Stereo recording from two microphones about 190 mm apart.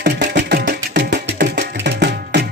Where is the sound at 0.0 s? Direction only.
65° right (ahead or behind).